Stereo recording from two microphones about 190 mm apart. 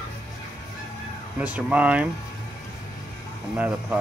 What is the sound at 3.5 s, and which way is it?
Speech, 5° right (ahead or behind).